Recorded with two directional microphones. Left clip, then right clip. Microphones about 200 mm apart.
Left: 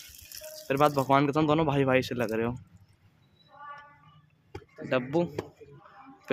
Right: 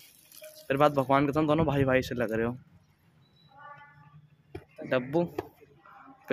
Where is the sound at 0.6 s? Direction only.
Centre (ahead or behind).